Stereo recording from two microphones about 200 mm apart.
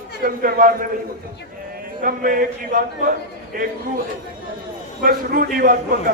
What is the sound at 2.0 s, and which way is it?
A man's voice, 45° right (ahead or behind).